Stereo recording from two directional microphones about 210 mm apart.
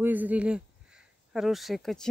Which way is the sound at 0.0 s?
10° right (ahead or behind).